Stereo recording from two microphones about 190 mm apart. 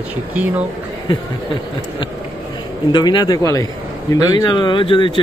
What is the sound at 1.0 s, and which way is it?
Speech, 25° left (ahead or behind).